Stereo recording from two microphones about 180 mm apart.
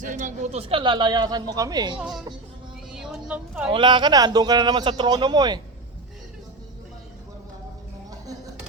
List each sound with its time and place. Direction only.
0.0 s speech: 45° right (ahead or behind); by 2.0 s 20° right (ahead or behind)
2.0 s speech: centre (ahead or behind)
3.7 s speech: 25° right (ahead or behind)